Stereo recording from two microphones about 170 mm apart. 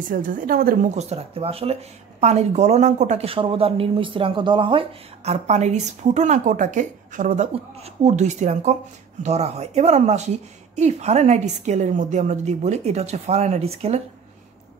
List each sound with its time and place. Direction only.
0.1 s a woman's voice: 50° right (ahead or behind)
0.9 s speech: 40° right (ahead or behind)
7.5 s speech: 40° right (ahead or behind)